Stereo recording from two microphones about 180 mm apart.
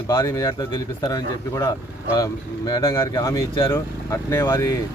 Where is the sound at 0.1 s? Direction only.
15° left (ahead or behind).